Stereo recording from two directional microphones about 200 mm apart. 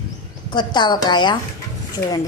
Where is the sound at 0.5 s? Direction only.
20° left (ahead or behind).